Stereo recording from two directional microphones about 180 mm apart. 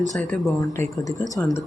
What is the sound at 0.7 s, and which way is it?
Speech, 15° left (ahead or behind).